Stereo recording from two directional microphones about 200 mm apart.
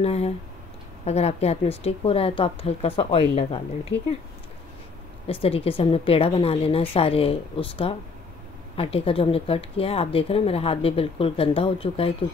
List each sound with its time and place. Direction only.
0.0 s speech: 30° left (ahead or behind)
3.9 s speech: 60° left (ahead or behind)
5.2 s speech: 30° left (ahead or behind)